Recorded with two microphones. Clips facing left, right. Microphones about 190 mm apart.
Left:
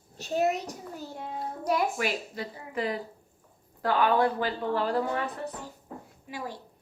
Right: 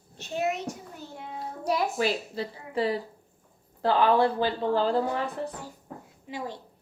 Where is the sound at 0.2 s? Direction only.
40° left (ahead or behind).